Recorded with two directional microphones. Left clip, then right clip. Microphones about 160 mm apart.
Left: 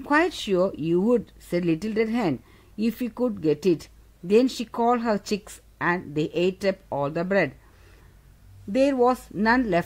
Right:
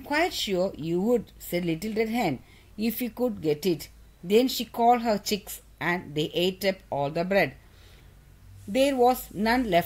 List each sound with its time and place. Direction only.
0.0 s speech: 50° left (ahead or behind)
8.7 s speech: 35° left (ahead or behind)